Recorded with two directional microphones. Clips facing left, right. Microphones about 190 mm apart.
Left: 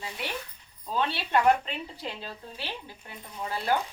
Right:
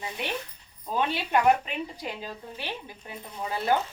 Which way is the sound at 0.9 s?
15° right (ahead or behind).